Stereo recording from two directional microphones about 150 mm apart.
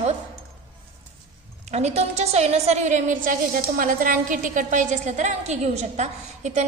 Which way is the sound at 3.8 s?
65° right (ahead or behind).